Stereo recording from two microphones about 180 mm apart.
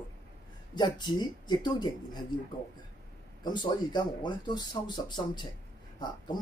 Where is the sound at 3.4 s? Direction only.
25° left (ahead or behind).